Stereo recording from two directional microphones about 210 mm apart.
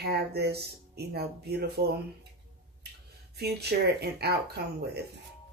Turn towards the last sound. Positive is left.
turn(degrees=-50)  # may be behind; listen again after turning